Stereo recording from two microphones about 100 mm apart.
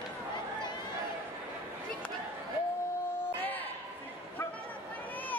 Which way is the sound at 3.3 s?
15° left (ahead or behind).